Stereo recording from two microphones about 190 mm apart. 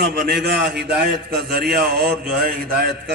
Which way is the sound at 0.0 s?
55° right (ahead or behind).